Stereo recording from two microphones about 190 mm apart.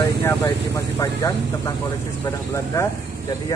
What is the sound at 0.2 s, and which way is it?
Speech, 15° left (ahead or behind).